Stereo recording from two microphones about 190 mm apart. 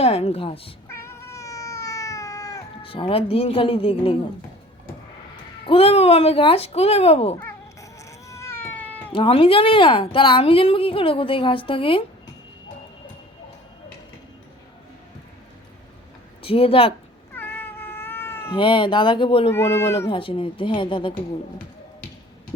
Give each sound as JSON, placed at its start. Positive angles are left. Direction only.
{"t": 0.0, "sound": "speech", "side_deg": 30}
{"t": 0.9, "sound": "cat", "side_deg": 15}
{"t": 2.8, "sound": "a woman's voice", "side_deg": 30}
{"t": 5.6, "sound": "speech", "side_deg": 30}
{"t": 7.3, "sound": "cat", "side_deg": 15}
{"t": 9.1, "sound": "a woman's voice", "side_deg": 30}
{"t": 16.4, "sound": "a woman's voice", "side_deg": 30}
{"t": 17.3, "sound": "cat", "side_deg": 10}
{"t": 18.5, "sound": "a woman's voice", "side_deg": 25}
{"t": 19.5, "sound": "speech", "side_deg": 15}
{"t": 20.1, "sound": "a woman's voice", "side_deg": 25}